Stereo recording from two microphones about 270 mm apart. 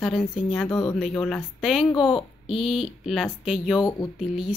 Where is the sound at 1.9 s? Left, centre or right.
Centre.